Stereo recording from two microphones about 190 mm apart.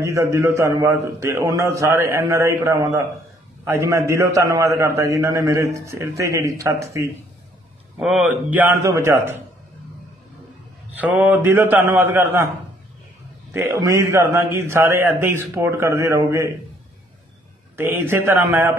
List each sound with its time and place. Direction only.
0.0 s a man's voice: 15° right (ahead or behind)
8.0 s a man's voice: 5° right (ahead or behind)
11.0 s a man's voice: 10° right (ahead or behind)
13.5 s a man's voice: 15° right (ahead or behind)
17.7 s a man's voice: 10° right (ahead or behind)